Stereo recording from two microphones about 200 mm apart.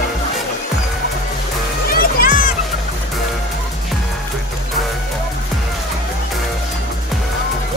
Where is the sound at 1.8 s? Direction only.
45° left (ahead or behind).